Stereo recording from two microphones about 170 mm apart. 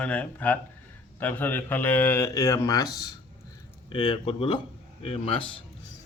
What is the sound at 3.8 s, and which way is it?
Speech, 30° left (ahead or behind).